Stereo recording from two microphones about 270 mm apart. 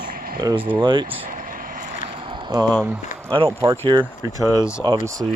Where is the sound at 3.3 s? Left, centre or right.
Centre.